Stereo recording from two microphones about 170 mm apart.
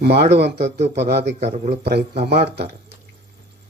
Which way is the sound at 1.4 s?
40° right (ahead or behind).